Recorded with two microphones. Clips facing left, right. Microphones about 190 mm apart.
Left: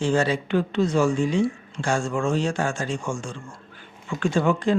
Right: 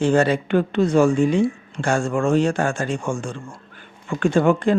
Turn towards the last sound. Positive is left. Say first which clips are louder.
# right 4 dB
turn(degrees=-55)  # may be behind; listen again after turning